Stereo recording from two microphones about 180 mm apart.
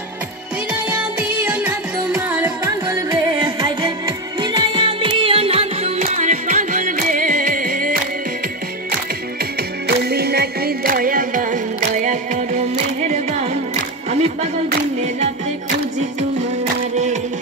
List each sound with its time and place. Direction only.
1.4 s music: 10° right (ahead or behind); by 8.0 s 50° right (ahead or behind)
9.6 s music: 60° right (ahead or behind); by 14.5 s 40° right (ahead or behind)
16.9 s music: 40° right (ahead or behind)